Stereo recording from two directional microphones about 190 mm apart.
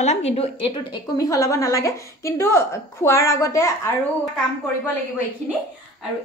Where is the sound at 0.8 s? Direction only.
20° left (ahead or behind).